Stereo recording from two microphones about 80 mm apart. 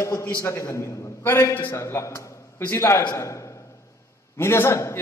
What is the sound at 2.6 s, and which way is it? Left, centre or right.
Speech, left.